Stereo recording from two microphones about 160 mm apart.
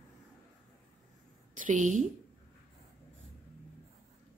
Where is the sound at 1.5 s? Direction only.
50° right (ahead or behind).